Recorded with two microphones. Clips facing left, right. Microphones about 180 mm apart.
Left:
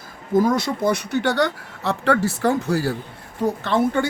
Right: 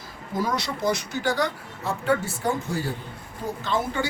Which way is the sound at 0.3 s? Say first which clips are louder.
Left 9 dB; 50° left (ahead or behind).